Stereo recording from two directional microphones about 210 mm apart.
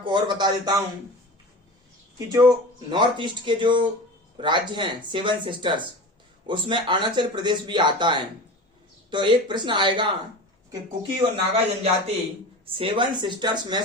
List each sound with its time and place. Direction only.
0.0 s speech: 20° right (ahead or behind)
2.1 s speech: 15° right (ahead or behind)
11.2 s speech: 25° right (ahead or behind)